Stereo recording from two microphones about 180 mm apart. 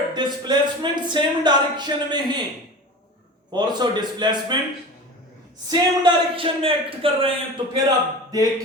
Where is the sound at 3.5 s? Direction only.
25° right (ahead or behind).